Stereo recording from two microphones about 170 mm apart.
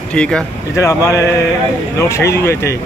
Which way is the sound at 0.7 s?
20° left (ahead or behind).